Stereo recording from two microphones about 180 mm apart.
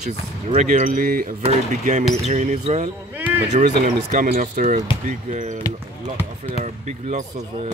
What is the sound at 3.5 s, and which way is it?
Speech, 45° right (ahead or behind).